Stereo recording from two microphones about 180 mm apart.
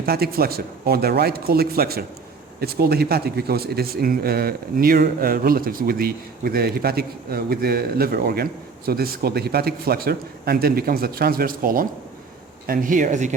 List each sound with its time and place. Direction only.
0.0 s speech: 60° right (ahead or behind); by 13.3 s 40° right (ahead or behind)